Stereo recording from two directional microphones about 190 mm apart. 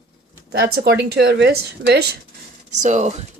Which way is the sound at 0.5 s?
55° right (ahead or behind).